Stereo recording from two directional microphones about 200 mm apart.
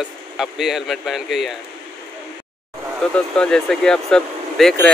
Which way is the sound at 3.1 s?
5° left (ahead or behind).